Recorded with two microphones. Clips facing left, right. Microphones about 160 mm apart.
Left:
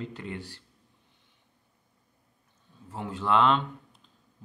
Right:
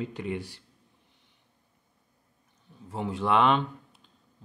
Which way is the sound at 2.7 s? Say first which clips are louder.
Right 4 dB; 15° right (ahead or behind).